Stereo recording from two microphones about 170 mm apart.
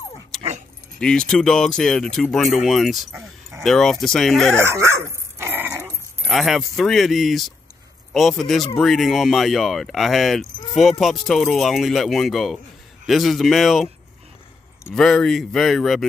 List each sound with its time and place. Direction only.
0.9 s speech: 5° left (ahead or behind)
4.6 s speech: 15° right (ahead or behind)
5.4 s dog: 15° right (ahead or behind)
6.2 s speech: centre (ahead or behind)
15.0 s speech: 5° left (ahead or behind)